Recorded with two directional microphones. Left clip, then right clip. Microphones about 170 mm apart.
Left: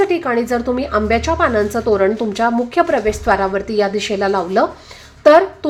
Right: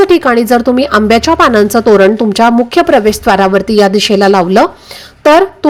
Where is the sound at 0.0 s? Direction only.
40° right (ahead or behind).